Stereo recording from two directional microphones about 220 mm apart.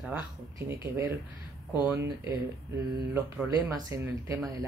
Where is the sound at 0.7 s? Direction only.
15° right (ahead or behind).